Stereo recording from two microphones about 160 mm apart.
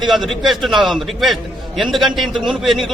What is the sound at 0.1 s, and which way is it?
A man's voice, centre (ahead or behind).